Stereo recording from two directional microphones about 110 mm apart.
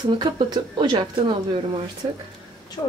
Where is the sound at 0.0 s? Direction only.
45° right (ahead or behind).